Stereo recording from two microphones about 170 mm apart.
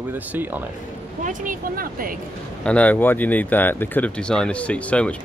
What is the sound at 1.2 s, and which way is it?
Speech, 50° right (ahead or behind).